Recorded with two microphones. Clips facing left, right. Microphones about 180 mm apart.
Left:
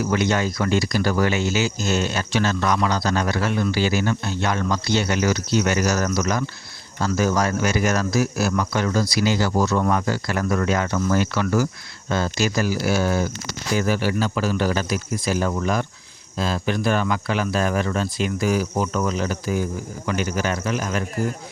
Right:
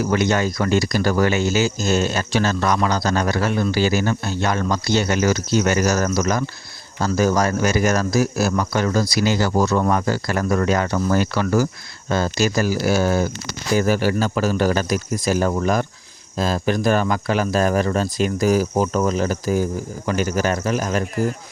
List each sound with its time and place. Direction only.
0.0 s speech: 45° right (ahead or behind)